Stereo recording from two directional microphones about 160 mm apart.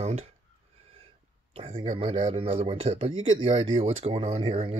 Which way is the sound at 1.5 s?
35° right (ahead or behind).